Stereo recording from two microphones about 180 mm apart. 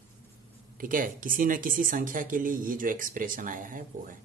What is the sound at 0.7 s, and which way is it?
A man's voice, 50° right (ahead or behind).